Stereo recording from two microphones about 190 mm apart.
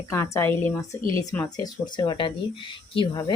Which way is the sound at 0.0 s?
15° left (ahead or behind).